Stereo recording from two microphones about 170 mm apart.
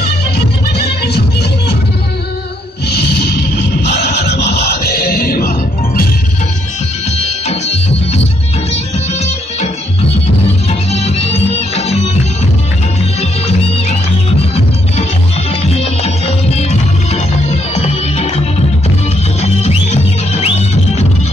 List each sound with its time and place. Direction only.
0.7 s music: 75° left (ahead or behind)
2.9 s music: 70° left (ahead or behind)
7.2 s music: 40° left (ahead or behind)
10.7 s music: 35° left (ahead or behind)
17.1 s music: 40° left (ahead or behind)
19.4 s music: 40° left (ahead or behind)